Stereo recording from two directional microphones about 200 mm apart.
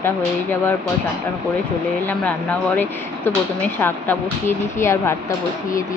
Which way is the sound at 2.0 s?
10° left (ahead or behind).